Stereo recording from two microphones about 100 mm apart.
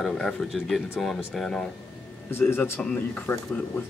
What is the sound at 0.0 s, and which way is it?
Speech, centre (ahead or behind).